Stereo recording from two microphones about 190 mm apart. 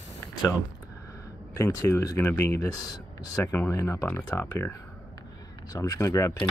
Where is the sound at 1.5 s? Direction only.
15° left (ahead or behind).